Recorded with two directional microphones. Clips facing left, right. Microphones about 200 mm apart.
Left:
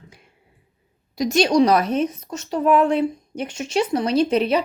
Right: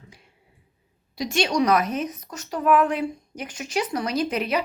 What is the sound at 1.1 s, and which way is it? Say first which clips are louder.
A woman's voice: left 6 dB; 40° left (ahead or behind).